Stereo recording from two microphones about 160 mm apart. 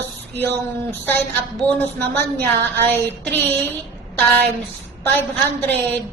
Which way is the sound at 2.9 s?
10° left (ahead or behind).